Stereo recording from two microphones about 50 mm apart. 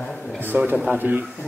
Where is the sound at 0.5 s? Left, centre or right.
Right.